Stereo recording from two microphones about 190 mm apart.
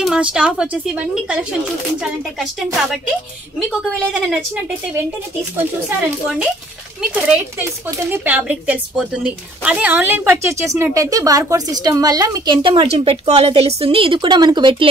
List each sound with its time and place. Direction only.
0.0 s speech: 5° right (ahead or behind)
5.9 s a woman's voice: 5° right (ahead or behind); by 14.9 s 25° right (ahead or behind)